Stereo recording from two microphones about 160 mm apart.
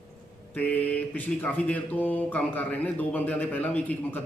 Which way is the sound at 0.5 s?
10° left (ahead or behind).